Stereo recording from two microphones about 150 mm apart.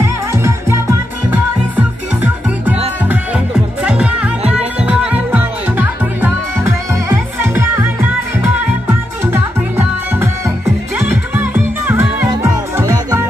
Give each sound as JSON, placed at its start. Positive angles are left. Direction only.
{"t": 0.0, "sound": "music", "side_deg": -20}